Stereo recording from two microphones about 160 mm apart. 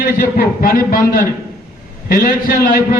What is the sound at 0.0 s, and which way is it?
A man's voice, 65° left (ahead or behind).